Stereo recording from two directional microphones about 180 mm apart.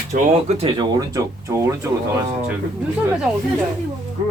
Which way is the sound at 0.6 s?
35° right (ahead or behind).